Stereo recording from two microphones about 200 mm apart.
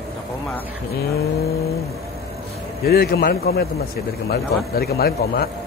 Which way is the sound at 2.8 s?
55° left (ahead or behind).